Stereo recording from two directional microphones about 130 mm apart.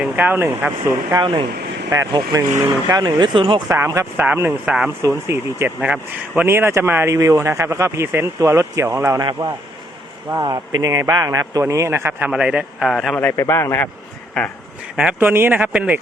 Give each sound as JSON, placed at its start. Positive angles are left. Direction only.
{"t": 0.0, "sound": "speech", "side_deg": -15}
{"t": 1.1, "sound": "speech", "side_deg": -40}
{"t": 1.9, "sound": "speech", "side_deg": -25}
{"t": 3.7, "sound": "speech", "side_deg": -20}
{"t": 5.0, "sound": "speech", "side_deg": -20}
{"t": 10.4, "sound": "speech", "side_deg": -30}
{"t": 12.3, "sound": "a man's voice", "side_deg": -5}
{"t": 13.1, "sound": "a man's voice", "side_deg": 20}
{"t": 14.9, "sound": "speech", "side_deg": -10}